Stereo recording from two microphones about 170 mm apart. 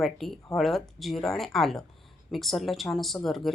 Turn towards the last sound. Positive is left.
turn(degrees=0)  # may be behind; listen again after turning